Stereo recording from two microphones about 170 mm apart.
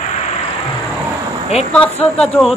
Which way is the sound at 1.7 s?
5° left (ahead or behind).